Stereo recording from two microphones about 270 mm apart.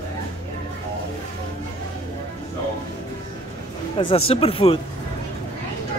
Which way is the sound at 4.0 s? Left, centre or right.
Centre.